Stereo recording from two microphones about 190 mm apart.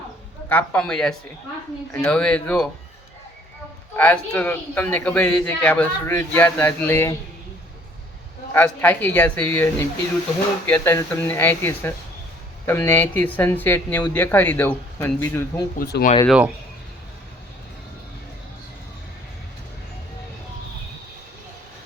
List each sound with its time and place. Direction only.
0.4 s speech: 10° left (ahead or behind)
3.9 s speech: 10° left (ahead or behind)
8.5 s speech: 10° left (ahead or behind)
15.8 s speech: 50° left (ahead or behind)